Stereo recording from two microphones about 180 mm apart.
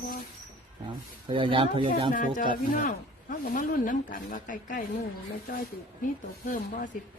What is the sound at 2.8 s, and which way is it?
Speech, 50° left (ahead or behind).